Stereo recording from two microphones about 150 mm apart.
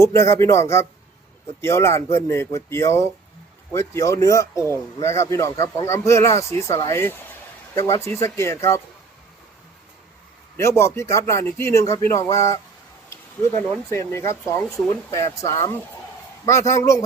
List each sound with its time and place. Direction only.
0.0 s speech: 20° left (ahead or behind)
10.6 s speech: 20° left (ahead or behind)
13.6 s speech: 20° left (ahead or behind)